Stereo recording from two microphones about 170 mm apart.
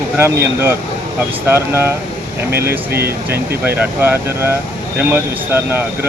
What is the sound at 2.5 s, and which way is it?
Speech, 70° right (ahead or behind).